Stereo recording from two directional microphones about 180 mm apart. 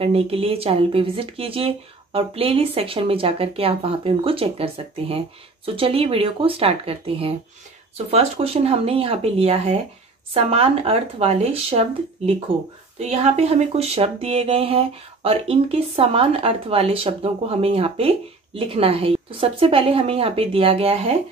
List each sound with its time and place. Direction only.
0.0 s speech: 35° right (ahead or behind)